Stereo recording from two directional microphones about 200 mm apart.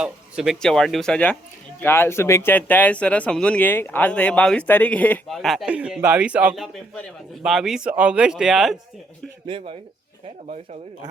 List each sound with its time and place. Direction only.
0.0 s speech: 5° right (ahead or behind)
9.5 s speech: 25° right (ahead or behind)